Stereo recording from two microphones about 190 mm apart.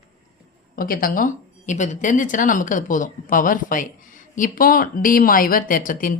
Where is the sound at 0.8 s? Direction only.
50° left (ahead or behind).